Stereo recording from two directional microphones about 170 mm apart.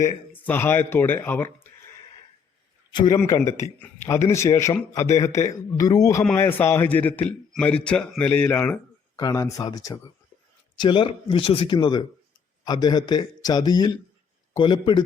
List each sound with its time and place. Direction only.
0.0 s a man's voice: 10° left (ahead or behind)
2.9 s a man's voice: 25° left (ahead or behind); by 8.8 s 10° left (ahead or behind)
9.1 s a man's voice: 20° left (ahead or behind)